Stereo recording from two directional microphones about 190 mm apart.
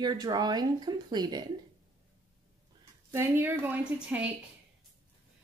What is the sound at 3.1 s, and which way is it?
Speech, 10° right (ahead or behind).